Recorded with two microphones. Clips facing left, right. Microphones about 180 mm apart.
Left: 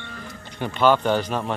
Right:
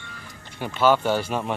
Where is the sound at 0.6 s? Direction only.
10° right (ahead or behind).